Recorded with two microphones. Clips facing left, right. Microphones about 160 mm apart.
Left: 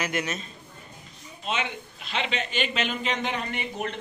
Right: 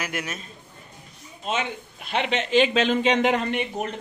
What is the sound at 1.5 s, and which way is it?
A man's voice, 50° right (ahead or behind).